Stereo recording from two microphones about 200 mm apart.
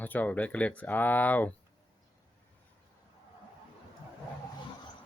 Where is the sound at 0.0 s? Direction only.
10° left (ahead or behind).